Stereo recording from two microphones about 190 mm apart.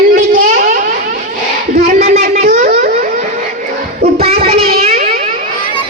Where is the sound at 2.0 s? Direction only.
35° right (ahead or behind).